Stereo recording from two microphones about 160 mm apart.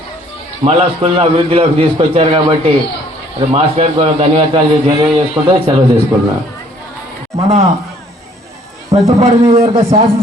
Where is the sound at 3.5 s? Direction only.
40° right (ahead or behind); by 5.5 s 20° right (ahead or behind).